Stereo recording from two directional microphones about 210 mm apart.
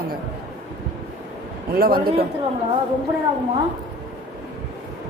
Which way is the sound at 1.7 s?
45° right (ahead or behind).